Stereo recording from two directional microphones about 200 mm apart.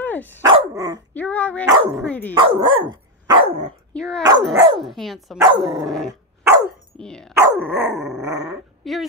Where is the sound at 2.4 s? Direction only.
25° right (ahead or behind).